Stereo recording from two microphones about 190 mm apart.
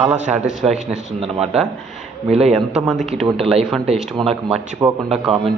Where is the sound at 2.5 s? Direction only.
5° right (ahead or behind).